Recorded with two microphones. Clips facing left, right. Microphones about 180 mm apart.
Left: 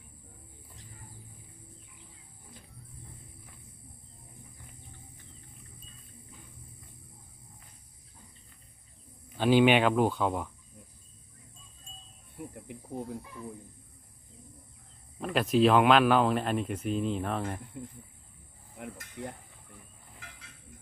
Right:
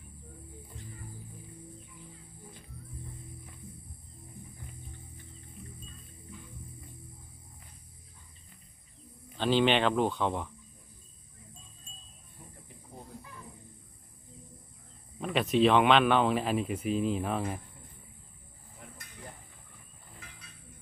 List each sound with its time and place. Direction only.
9.4 s speech: 10° left (ahead or behind)
15.2 s speech: centre (ahead or behind)
18.8 s a sound: 90° left